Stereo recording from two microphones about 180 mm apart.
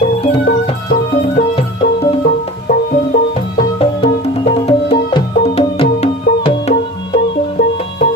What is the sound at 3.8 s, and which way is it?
Music, 35° left (ahead or behind).